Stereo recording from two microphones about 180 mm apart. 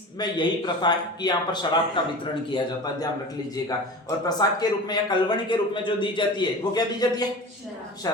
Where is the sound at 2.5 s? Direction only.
20° left (ahead or behind).